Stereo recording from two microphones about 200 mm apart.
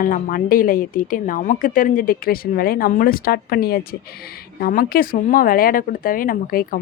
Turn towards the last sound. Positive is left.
turn(degrees=45)  # may be behind; listen again after turning